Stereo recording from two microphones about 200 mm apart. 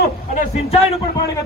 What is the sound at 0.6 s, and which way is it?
Speech, 30° left (ahead or behind).